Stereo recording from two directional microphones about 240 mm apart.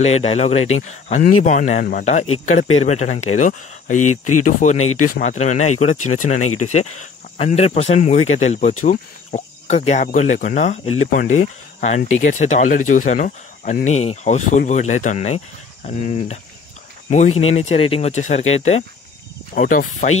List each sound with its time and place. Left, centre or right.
0.0 s speech: left
1.4 s cricket: left
2.8 s speech: left
4.0 s speech: left
5.1 s cricket: left
6.4 s speech: left
7.0 s speech: left
8.8 s cricket: left
11.8 s speech: left
17.4 s speech: left
19.5 s cricket: left